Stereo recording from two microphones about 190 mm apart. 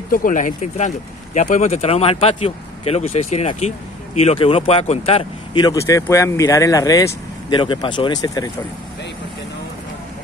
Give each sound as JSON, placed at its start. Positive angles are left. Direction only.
{"t": 0.1, "sound": "speech", "side_deg": 45}